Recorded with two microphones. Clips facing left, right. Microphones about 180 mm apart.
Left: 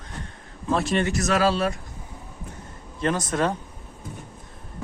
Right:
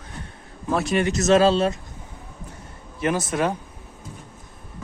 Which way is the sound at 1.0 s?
20° right (ahead or behind).